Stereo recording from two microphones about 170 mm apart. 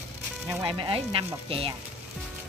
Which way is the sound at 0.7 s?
30° right (ahead or behind).